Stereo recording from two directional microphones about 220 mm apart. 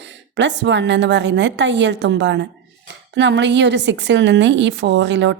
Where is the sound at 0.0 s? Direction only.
55° right (ahead or behind).